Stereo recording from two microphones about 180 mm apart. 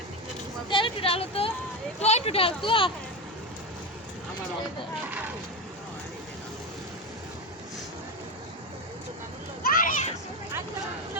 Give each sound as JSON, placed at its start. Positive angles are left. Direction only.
{"t": 0.7, "sound": "speech", "side_deg": 30}
{"t": 9.6, "sound": "children playing", "side_deg": 50}